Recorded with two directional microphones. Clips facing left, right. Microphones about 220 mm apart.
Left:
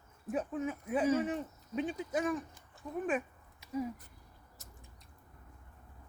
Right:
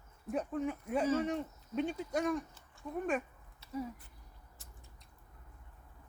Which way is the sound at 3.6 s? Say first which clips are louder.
Left 3 dB; 15° left (ahead or behind).